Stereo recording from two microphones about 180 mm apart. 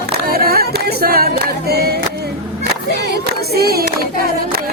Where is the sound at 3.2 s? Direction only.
60° right (ahead or behind).